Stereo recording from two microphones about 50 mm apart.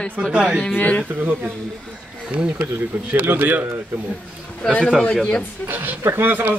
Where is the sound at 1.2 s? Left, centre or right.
Right.